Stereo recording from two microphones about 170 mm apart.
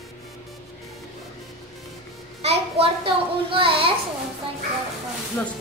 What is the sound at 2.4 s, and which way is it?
A child's voice, 35° right (ahead or behind).